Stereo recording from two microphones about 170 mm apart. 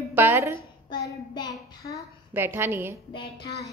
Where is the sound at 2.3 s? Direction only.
15° right (ahead or behind).